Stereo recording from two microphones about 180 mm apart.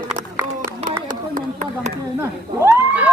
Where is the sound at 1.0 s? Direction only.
45° right (ahead or behind).